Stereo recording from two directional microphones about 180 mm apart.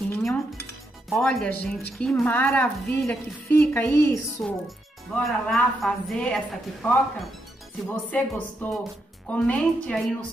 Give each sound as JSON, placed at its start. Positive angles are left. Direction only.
{"t": 0.1, "sound": "cutlery", "side_deg": 5}
{"t": 1.1, "sound": "a woman's voice", "side_deg": 5}
{"t": 4.4, "sound": "a woman's voice", "side_deg": 5}